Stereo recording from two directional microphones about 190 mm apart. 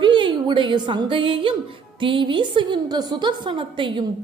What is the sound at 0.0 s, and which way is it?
A woman's voice, 25° right (ahead or behind).